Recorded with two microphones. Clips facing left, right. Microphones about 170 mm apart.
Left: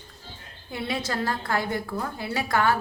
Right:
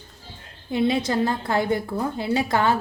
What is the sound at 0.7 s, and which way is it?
A woman's voice, 20° right (ahead or behind).